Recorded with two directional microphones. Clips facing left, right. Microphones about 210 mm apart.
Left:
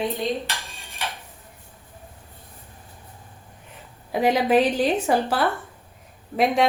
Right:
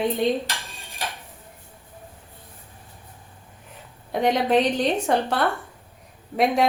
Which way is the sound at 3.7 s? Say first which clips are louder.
Left 1 dB; 5° left (ahead or behind).